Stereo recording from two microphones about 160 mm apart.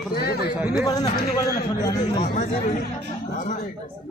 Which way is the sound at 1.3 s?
20° left (ahead or behind).